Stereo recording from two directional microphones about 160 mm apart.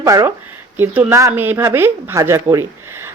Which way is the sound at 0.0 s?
20° right (ahead or behind).